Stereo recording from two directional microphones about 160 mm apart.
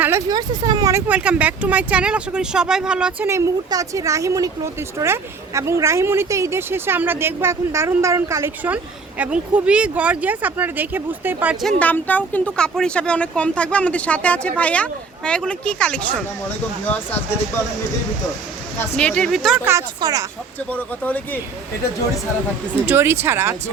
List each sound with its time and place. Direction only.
0.3 s speech: 25° right (ahead or behind)
1.0 s speech: 10° right (ahead or behind)
3.2 s speech: 20° right (ahead or behind)
11.8 s speech: 10° left (ahead or behind)
18.8 s speech: 5° left (ahead or behind)
20.0 s speech: 25° right (ahead or behind)
20.7 s speech: 10° left (ahead or behind)
22.9 s speech: 15° right (ahead or behind)